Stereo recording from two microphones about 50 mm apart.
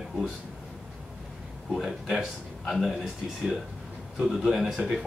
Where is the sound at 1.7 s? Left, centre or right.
Centre.